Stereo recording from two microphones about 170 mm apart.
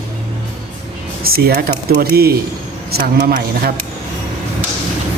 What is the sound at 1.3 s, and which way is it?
Speech, 65° right (ahead or behind).